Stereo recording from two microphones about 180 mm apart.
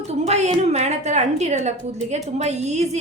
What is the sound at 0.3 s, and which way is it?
A woman's voice, 40° right (ahead or behind).